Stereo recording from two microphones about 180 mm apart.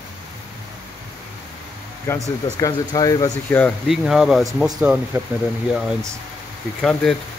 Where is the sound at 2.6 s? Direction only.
20° left (ahead or behind).